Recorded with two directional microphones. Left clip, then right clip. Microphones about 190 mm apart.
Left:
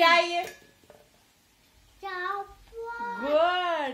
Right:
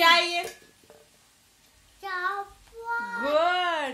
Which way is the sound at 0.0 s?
30° right (ahead or behind).